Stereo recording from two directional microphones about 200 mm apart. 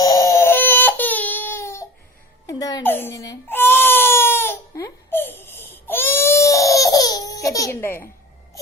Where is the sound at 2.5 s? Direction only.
20° left (ahead or behind).